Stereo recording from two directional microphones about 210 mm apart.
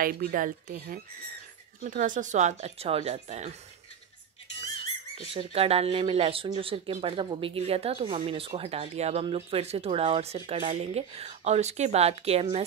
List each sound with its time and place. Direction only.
0.0 s speech: 45° right (ahead or behind)
5.3 s speech: 25° right (ahead or behind)